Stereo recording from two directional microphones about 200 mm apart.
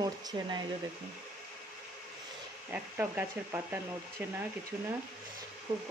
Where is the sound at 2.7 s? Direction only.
10° right (ahead or behind).